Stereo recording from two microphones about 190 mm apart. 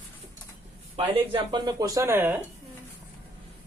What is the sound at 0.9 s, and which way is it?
Speech, 25° right (ahead or behind).